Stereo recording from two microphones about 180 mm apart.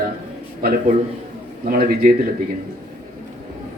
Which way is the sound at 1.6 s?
55° right (ahead or behind).